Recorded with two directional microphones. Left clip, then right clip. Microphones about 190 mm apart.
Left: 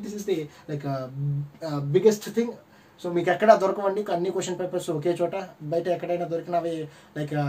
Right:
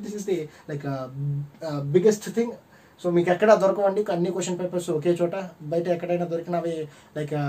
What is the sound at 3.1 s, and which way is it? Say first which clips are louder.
Speech: even; 20° right (ahead or behind).